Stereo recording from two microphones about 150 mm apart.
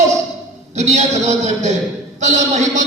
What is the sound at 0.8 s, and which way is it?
Speech, 50° right (ahead or behind).